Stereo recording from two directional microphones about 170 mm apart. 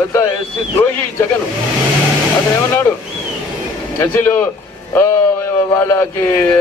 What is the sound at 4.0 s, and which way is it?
Speech, 15° left (ahead or behind).